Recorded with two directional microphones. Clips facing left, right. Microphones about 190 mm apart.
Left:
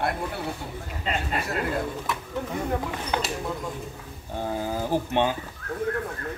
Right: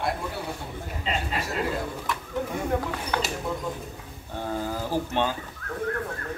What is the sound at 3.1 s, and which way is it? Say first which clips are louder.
Speech: left 1 dB; 20° left (ahead or behind).